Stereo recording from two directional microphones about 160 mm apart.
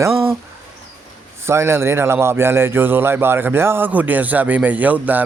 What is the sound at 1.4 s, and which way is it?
A man's voice, 15° right (ahead or behind).